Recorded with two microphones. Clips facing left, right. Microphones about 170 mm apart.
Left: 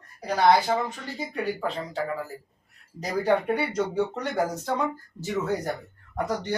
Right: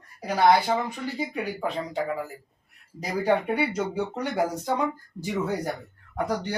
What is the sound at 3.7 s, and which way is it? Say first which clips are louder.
Speech: left 2 dB; 10° right (ahead or behind).